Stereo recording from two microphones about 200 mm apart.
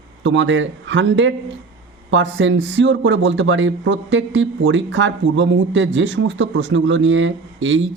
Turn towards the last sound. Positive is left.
turn(degrees=-70)  # may be behind; listen again after turning